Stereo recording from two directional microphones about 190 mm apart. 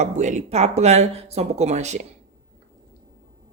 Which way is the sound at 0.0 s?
40° right (ahead or behind).